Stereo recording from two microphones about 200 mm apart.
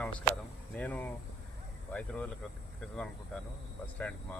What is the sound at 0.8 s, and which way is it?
Speech, 10° left (ahead or behind).